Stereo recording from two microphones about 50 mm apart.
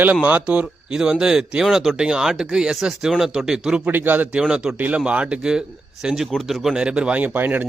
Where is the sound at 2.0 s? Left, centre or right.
Centre.